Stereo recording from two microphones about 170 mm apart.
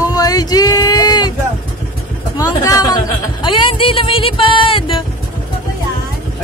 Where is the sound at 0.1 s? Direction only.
20° left (ahead or behind).